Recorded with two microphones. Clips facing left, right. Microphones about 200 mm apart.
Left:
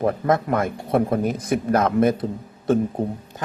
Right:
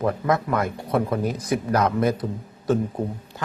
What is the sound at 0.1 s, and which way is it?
Speech, 25° left (ahead or behind).